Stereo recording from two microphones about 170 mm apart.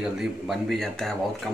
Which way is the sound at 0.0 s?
Centre (ahead or behind).